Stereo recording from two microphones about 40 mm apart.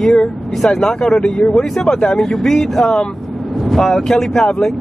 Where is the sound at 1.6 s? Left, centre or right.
Centre.